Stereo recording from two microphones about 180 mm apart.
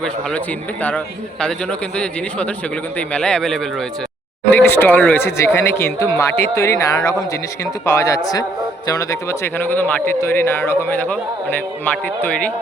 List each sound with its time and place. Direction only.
0.0 s a man's voice: 5° left (ahead or behind)
3.1 s a man's voice: 5° left (ahead or behind)